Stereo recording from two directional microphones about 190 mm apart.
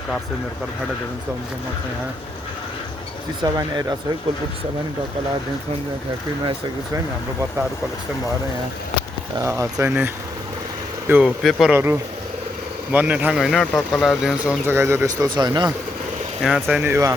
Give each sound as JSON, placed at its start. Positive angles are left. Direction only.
{"t": 3.4, "sound": "speech", "side_deg": -20}
{"t": 9.4, "sound": "speech", "side_deg": -15}
{"t": 11.1, "sound": "speech", "side_deg": -5}
{"t": 16.4, "sound": "speech", "side_deg": 0}